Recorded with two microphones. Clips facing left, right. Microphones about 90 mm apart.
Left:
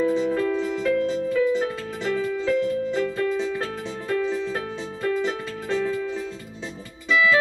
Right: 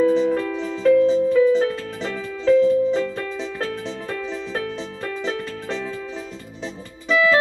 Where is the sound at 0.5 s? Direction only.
5° left (ahead or behind).